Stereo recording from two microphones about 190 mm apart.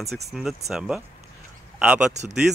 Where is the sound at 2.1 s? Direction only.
35° right (ahead or behind).